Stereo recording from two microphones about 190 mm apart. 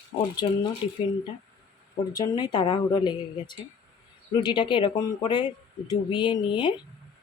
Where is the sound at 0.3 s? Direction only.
25° left (ahead or behind).